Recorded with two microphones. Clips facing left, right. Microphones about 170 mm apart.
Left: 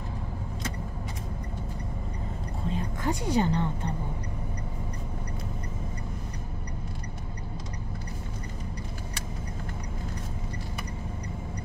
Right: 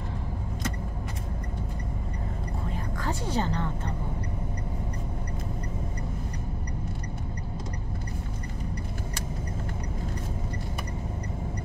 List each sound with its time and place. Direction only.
2.7 s a woman's voice: 15° left (ahead or behind)